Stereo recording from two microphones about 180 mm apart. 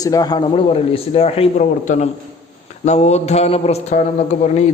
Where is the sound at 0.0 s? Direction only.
20° left (ahead or behind).